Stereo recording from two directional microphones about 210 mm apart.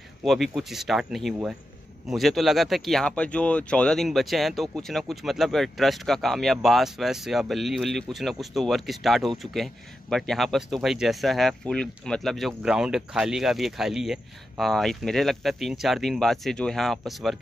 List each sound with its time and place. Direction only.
0.2 s speech: centre (ahead or behind)